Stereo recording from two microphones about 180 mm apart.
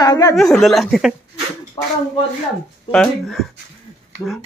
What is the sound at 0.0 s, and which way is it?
Speech, 20° left (ahead or behind).